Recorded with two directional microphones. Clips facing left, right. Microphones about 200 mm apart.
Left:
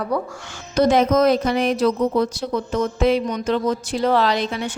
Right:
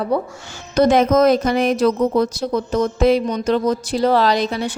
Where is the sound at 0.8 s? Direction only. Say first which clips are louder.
Right 2 dB; 55° right (ahead or behind).